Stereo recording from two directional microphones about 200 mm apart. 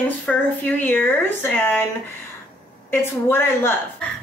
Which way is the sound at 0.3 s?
5° left (ahead or behind).